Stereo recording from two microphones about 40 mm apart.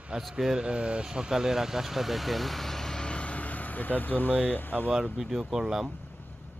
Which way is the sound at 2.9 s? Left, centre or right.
Left.